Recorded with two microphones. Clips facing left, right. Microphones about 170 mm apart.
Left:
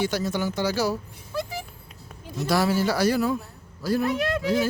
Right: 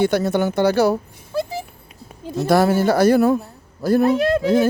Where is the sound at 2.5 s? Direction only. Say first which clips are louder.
Right 7 dB; 55° right (ahead or behind).